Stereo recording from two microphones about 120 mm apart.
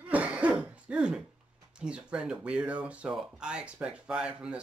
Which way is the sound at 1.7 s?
10° right (ahead or behind).